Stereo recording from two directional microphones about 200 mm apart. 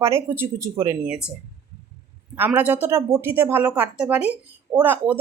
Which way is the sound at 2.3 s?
10° right (ahead or behind).